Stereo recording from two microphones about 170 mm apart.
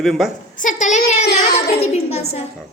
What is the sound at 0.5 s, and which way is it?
A woman's voice, 45° left (ahead or behind).